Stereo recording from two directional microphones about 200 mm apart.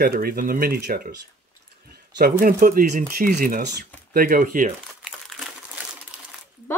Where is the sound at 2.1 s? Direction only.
45° right (ahead or behind).